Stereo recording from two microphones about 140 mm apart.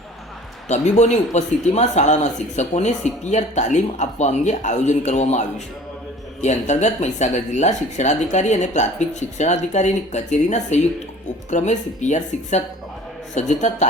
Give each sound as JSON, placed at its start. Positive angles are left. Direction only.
{"t": 0.7, "sound": "a man's voice", "side_deg": 55}